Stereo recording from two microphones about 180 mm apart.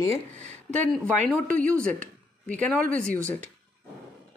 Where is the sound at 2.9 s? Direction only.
5° left (ahead or behind).